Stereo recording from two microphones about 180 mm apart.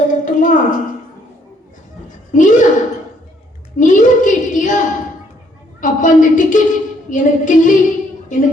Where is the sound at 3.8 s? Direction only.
45° left (ahead or behind).